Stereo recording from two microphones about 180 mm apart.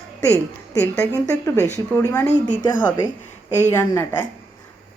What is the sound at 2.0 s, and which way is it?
Speech, 10° left (ahead or behind).